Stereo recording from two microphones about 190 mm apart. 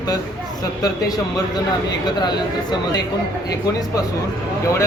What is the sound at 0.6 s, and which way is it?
Speech, 20° left (ahead or behind).